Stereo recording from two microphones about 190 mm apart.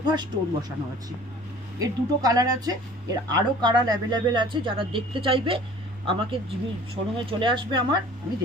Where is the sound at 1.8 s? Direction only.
20° right (ahead or behind).